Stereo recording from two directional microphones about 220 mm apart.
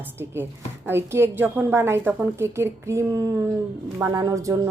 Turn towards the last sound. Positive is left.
turn(degrees=-15)  # may be behind; listen again after turning